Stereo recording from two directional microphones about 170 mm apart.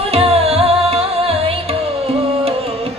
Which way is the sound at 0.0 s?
35° right (ahead or behind).